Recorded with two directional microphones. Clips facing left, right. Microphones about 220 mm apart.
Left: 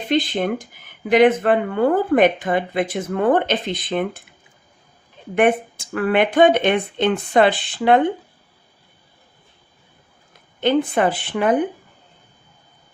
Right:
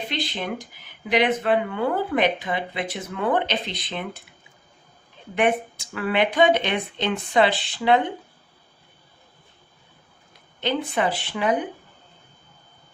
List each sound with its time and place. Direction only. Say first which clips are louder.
0.1 s speech: left 13 dB; 50° left (ahead or behind)
5.3 s speech: left 5 dB; 50° left (ahead or behind)
10.6 s speech: left 7 dB; 50° left (ahead or behind)